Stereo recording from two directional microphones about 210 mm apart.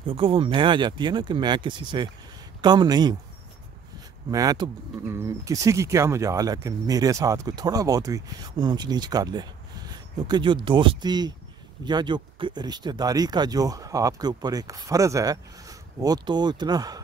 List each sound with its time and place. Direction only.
0.0 s speech: 25° right (ahead or behind)
4.3 s speech: 15° right (ahead or behind)